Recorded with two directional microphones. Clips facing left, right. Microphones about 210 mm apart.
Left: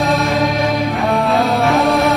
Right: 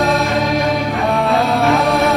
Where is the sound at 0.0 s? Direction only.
Centre (ahead or behind).